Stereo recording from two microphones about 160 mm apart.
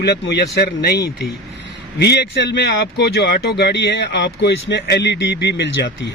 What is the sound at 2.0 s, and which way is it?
A man's voice, 90° left.